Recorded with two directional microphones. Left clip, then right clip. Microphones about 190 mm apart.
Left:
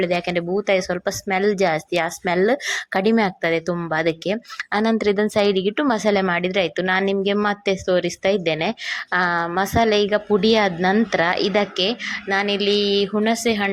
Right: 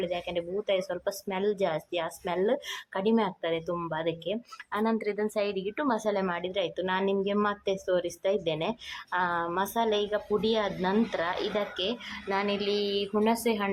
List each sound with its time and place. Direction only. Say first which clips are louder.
0.0 s speech: left 10 dB; 20° left (ahead or behind)